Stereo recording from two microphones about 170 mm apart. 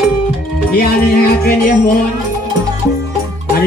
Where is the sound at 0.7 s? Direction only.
65° left (ahead or behind).